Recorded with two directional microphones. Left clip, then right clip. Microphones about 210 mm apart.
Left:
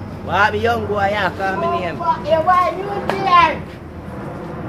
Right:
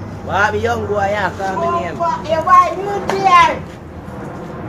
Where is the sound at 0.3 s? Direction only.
20° left (ahead or behind).